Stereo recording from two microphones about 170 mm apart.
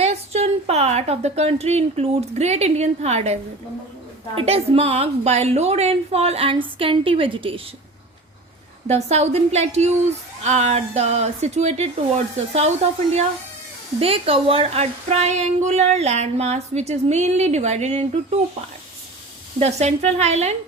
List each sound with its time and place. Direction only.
0.0 s a woman's voice: 40° right (ahead or behind)
4.4 s a woman's voice: 35° right (ahead or behind)
8.9 s a woman's voice: 40° right (ahead or behind)
14.0 s a woman's voice: 35° right (ahead or behind)
19.5 s a woman's voice: 40° right (ahead or behind)